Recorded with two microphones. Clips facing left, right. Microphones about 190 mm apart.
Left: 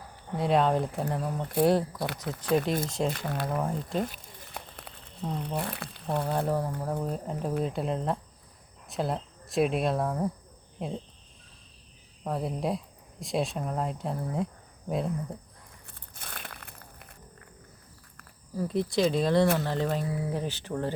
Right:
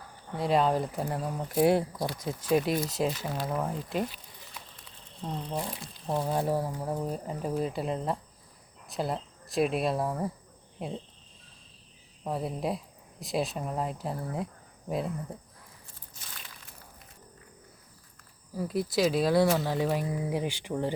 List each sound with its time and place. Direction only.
0.3 s speech: centre (ahead or behind)
3.1 s speech: 55° left (ahead or behind)
3.4 s speech: centre (ahead or behind)
4.1 s a sound: 50° left (ahead or behind)
5.2 s speech: 5° left (ahead or behind)
5.5 s speech: 65° left (ahead or behind)
6.2 s speech: 10° right (ahead or behind)
12.2 s speech: centre (ahead or behind)
15.9 s a sound: 60° left (ahead or behind)
18.5 s speech: 5° right (ahead or behind)